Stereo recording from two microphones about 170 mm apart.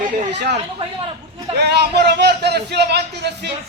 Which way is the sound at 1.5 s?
75° right (ahead or behind).